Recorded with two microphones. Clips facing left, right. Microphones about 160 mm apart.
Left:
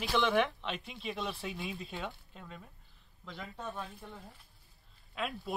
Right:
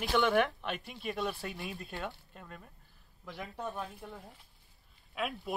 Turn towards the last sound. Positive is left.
turn(degrees=-5)  # may be behind; listen again after turning